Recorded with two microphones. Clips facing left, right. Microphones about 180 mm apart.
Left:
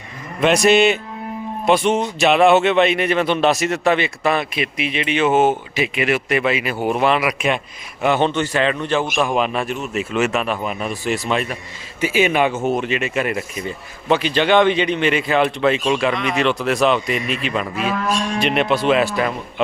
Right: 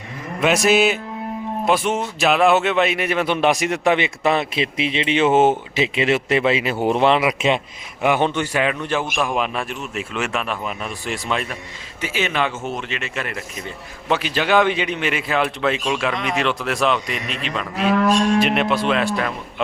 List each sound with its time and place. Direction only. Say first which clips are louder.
0.3 s a man's voice: left 2 dB; 5° right (ahead or behind); by 7.6 s 25° right (ahead or behind)
8.0 s a man's voice: left 1 dB; 10° right (ahead or behind); by 13.7 s 15° left (ahead or behind)
14.1 s a man's voice: left 3 dB; 5° right (ahead or behind)